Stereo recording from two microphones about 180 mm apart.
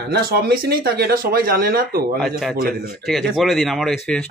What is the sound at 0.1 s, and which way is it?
Speech, 60° right (ahead or behind).